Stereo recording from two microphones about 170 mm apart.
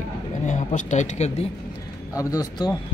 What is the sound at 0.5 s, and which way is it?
Speech, 45° left (ahead or behind).